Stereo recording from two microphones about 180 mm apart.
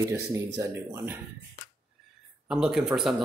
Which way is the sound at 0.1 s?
15° right (ahead or behind).